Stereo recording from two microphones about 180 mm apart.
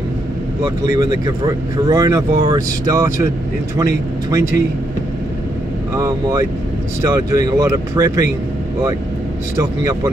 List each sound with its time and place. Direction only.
0.8 s speech: 20° right (ahead or behind)
5.9 s speech: 20° right (ahead or behind)